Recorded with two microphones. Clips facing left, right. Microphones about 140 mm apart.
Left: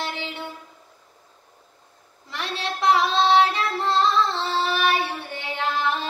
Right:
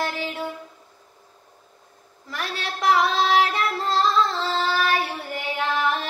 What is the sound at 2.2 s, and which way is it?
Child singing, 25° left (ahead or behind).